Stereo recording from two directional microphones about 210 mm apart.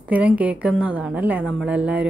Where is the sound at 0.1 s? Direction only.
5° right (ahead or behind).